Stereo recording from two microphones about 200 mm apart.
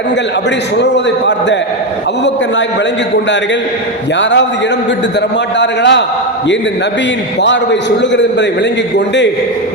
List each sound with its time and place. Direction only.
4.2 s a man's voice: 65° left (ahead or behind)
5.5 s a man's voice: 65° left (ahead or behind)
7.4 s a man's voice: 60° left (ahead or behind)